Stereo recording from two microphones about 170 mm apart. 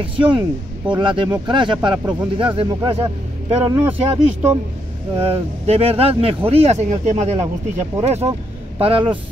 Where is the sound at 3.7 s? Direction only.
15° right (ahead or behind).